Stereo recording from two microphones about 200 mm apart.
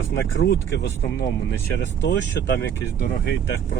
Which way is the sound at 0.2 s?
60° left (ahead or behind).